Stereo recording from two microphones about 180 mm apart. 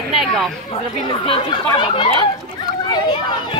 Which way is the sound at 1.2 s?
30° left (ahead or behind).